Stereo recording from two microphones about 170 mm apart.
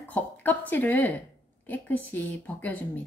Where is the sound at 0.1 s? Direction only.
10° left (ahead or behind).